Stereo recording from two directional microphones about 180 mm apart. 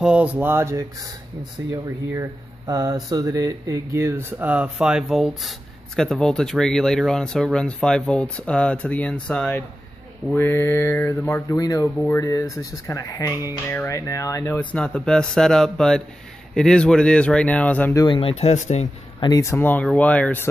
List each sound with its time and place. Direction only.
0.0 s mantra: 5° right (ahead or behind)
1.7 s speech: 20° right (ahead or behind); by 18.0 s 10° left (ahead or behind)
18.0 s speech: 30° left (ahead or behind); by 20.4 s 10° left (ahead or behind)